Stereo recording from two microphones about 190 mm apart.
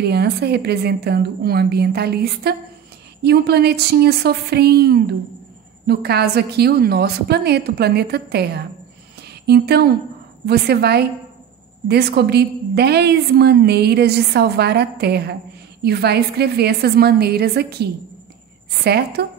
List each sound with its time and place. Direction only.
0.0 s a woman's voice: 60° right (ahead or behind)
18.9 s a woman's voice: 55° right (ahead or behind)